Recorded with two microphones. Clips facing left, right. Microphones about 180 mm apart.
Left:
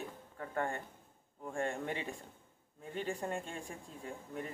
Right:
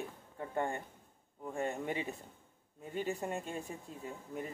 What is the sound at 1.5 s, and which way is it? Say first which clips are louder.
A man's voice: right 1 dB; 5° right (ahead or behind).